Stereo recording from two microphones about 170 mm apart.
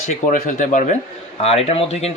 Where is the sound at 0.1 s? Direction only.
50° left (ahead or behind).